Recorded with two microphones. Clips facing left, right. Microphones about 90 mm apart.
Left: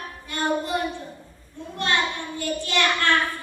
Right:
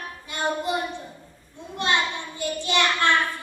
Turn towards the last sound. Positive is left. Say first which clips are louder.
# right 1 dB
turn(degrees=-20)  # may be behind; listen again after turning